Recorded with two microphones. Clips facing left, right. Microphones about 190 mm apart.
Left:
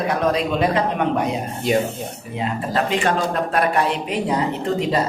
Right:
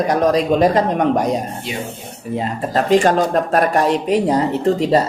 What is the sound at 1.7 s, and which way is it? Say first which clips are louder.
Speech: left 12 dB; 45° left (ahead or behind).